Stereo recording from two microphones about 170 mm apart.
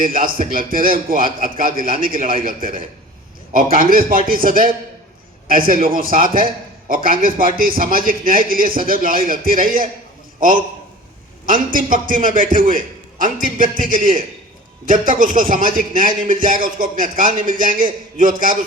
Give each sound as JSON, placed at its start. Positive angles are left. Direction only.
{"t": 0.0, "sound": "a man's voice", "side_deg": -55}
{"t": 11.4, "sound": "a man's voice", "side_deg": -50}